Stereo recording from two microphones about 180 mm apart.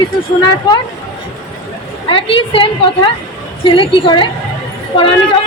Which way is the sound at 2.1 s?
30° left (ahead or behind).